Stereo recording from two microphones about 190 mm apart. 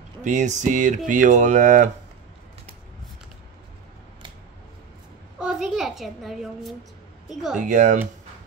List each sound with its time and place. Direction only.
0.2 s speech: 40° right (ahead or behind)
5.4 s a sound: centre (ahead or behind)
7.5 s speech: 40° right (ahead or behind)